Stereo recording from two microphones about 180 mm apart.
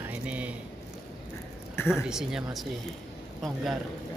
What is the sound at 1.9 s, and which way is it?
Speech, centre (ahead or behind).